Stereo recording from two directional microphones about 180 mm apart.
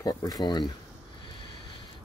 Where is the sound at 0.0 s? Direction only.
20° left (ahead or behind).